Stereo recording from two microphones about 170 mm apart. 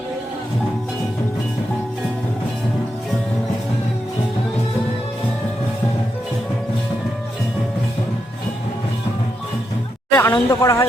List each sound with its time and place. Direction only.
10.2 s speech: 15° left (ahead or behind)